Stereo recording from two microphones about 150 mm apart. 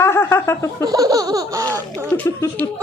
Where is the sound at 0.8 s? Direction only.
25° right (ahead or behind).